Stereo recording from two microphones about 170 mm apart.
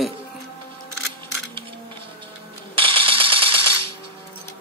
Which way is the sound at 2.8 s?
30° right (ahead or behind).